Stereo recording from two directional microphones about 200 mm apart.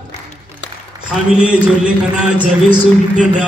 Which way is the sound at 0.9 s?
20° right (ahead or behind).